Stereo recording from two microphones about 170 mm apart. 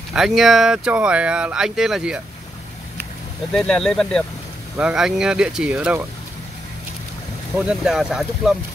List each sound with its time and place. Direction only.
0.1 s speech: centre (ahead or behind)
3.5 s speech: 5° left (ahead or behind)
7.5 s speech: 5° right (ahead or behind)